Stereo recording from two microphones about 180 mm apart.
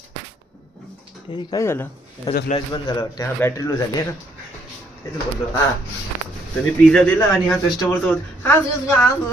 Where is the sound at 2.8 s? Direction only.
20° left (ahead or behind).